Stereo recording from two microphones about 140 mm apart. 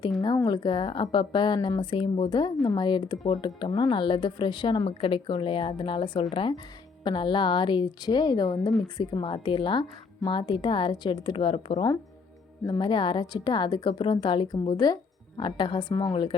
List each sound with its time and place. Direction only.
0.2 s speech: 30° left (ahead or behind)
12.6 s speech: 30° left (ahead or behind)